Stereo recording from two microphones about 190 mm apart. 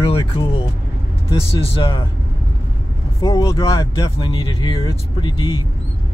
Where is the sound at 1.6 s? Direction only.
25° left (ahead or behind).